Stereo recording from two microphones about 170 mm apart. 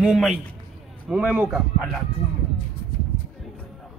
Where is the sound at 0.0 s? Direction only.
5° right (ahead or behind).